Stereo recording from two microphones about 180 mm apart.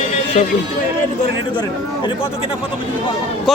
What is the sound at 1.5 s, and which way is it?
Speech, 25° left (ahead or behind).